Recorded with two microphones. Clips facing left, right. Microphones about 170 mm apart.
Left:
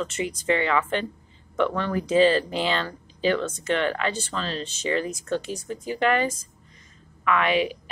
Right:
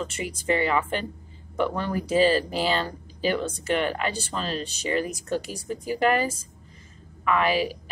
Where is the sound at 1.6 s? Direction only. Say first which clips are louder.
Left 2 dB; 10° right (ahead or behind).